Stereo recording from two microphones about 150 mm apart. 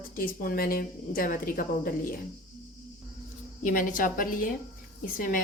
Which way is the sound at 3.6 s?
60° left (ahead or behind).